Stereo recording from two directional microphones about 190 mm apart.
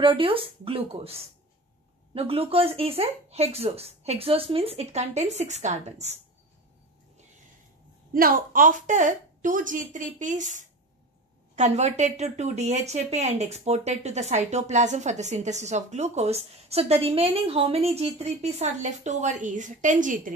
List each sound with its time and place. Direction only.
0.0 s speech: 30° right (ahead or behind)
8.1 s a woman's voice: 50° right (ahead or behind)